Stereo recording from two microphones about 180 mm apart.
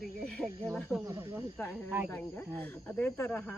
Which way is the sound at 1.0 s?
15° right (ahead or behind).